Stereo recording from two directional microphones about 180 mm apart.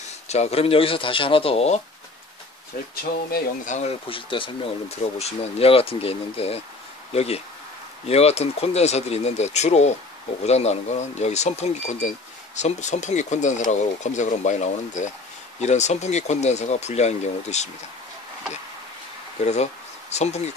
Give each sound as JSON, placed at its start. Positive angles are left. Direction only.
{"t": 0.3, "sound": "speech", "side_deg": 35}
{"t": 3.0, "sound": "speech", "side_deg": 55}
{"t": 3.7, "sound": "speech", "side_deg": 35}
{"t": 19.4, "sound": "speech", "side_deg": 40}